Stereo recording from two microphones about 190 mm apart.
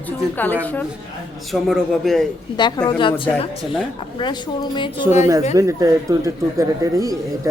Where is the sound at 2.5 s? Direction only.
25° left (ahead or behind).